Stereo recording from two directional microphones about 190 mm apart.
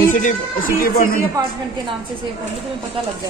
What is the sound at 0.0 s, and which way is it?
Speech, 45° left (ahead or behind).